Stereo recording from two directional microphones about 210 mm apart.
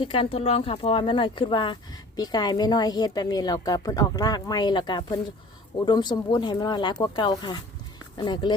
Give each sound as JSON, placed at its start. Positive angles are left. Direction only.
{"t": 0.0, "sound": "speech", "side_deg": 25}